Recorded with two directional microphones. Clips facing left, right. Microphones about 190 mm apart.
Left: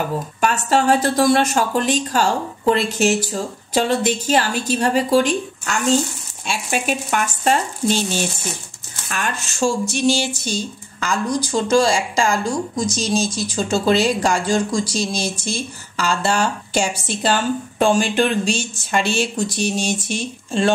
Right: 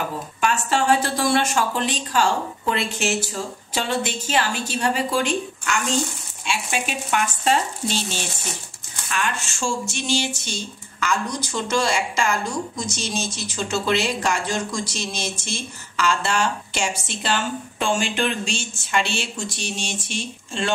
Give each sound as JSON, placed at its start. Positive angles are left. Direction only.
{"t": 0.4, "sound": "speech", "side_deg": 40}
{"t": 9.1, "sound": "speech", "side_deg": 40}